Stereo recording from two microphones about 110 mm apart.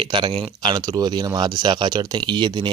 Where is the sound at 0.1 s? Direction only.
50° right (ahead or behind).